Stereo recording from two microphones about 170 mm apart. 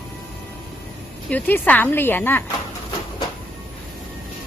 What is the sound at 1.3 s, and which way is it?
A woman's voice, 10° left (ahead or behind).